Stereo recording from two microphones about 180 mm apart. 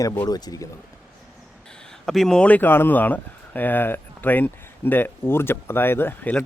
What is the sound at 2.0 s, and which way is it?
Speech, centre (ahead or behind).